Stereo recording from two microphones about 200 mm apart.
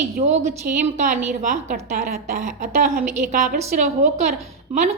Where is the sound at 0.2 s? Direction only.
35° right (ahead or behind).